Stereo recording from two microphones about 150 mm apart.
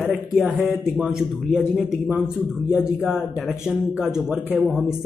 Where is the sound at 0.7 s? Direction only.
5° right (ahead or behind).